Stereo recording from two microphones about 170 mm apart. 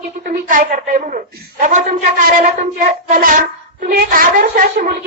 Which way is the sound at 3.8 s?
55° right (ahead or behind).